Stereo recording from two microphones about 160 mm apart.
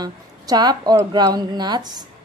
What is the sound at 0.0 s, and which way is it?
Speech, 25° right (ahead or behind).